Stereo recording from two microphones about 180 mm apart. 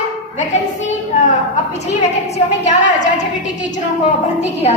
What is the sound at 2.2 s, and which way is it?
A woman's voice, 40° left (ahead or behind).